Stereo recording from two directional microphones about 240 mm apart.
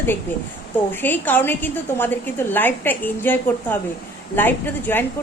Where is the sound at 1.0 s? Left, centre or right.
Centre.